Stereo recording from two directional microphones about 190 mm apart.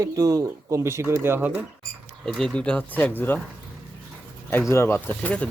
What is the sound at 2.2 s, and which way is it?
Speech, centre (ahead or behind).